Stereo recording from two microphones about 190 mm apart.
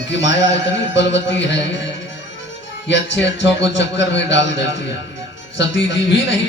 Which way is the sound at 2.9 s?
70° left (ahead or behind).